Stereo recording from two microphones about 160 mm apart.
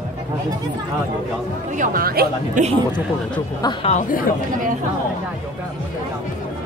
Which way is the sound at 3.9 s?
55° left (ahead or behind).